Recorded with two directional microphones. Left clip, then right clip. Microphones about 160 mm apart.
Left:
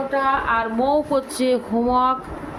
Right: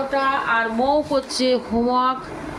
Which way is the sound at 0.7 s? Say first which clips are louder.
Left 1 dB; 30° left (ahead or behind).